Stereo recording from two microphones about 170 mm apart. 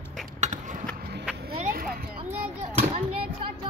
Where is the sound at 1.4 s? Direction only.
60° right (ahead or behind).